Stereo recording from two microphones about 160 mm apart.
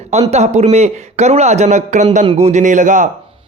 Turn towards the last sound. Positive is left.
turn(degrees=-50)  # may be behind; listen again after turning